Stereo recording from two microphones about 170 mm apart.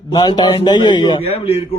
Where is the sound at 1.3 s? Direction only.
35° left (ahead or behind).